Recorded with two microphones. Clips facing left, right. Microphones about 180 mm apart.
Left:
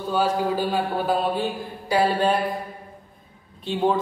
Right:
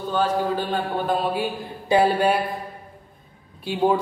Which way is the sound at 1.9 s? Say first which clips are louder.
Right 3 dB; 20° right (ahead or behind).